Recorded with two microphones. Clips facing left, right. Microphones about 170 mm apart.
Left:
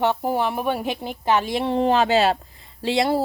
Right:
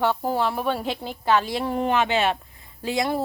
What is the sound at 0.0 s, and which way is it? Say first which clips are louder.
Speech: left 1 dB; 15° left (ahead or behind).